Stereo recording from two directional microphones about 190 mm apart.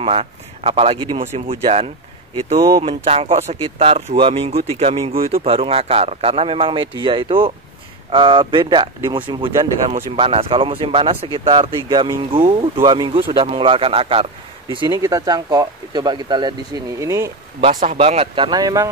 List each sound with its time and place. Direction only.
0.0 s speech: 30° right (ahead or behind); by 17.3 s 15° right (ahead or behind)
17.9 s speech: 30° right (ahead or behind)